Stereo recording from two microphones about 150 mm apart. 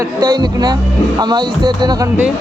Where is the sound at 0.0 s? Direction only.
25° right (ahead or behind).